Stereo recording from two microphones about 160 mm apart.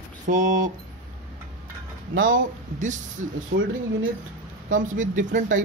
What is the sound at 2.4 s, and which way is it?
Speech, 50° right (ahead or behind).